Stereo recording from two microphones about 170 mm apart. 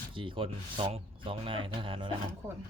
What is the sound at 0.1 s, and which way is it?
Speech, 30° right (ahead or behind).